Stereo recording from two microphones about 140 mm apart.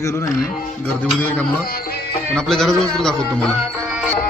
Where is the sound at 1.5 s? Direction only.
90° left.